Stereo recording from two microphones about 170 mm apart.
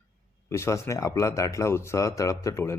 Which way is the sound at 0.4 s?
15° left (ahead or behind).